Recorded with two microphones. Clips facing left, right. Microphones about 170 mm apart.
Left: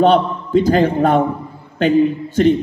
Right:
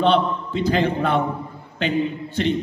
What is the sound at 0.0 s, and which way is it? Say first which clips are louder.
A man's voice: left 5 dB; 45° left (ahead or behind).